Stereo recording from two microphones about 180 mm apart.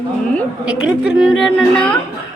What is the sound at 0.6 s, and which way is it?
A woman's voice, 5° right (ahead or behind).